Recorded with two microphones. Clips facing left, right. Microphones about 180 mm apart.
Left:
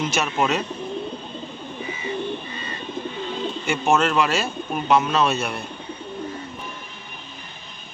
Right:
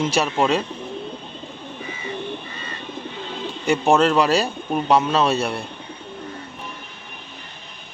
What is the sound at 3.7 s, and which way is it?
A man's voice, 35° right (ahead or behind).